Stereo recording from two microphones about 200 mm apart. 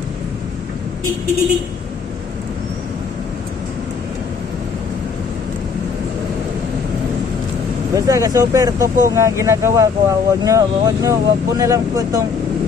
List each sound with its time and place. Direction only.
7.9 s speech: 15° right (ahead or behind)